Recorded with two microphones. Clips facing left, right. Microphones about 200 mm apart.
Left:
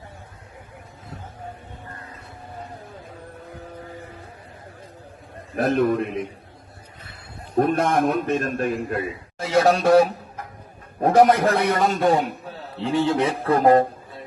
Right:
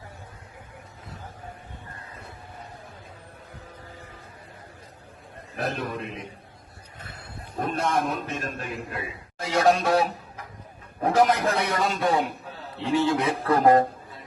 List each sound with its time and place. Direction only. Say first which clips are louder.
5.5 s a man's voice: left 10 dB; 50° left (ahead or behind)
7.5 s a man's voice: left 7 dB; 55° left (ahead or behind)
12.8 s a man's voice: left 2 dB; 35° left (ahead or behind)